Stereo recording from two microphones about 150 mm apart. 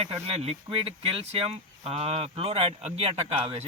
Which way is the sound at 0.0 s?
45° right (ahead or behind).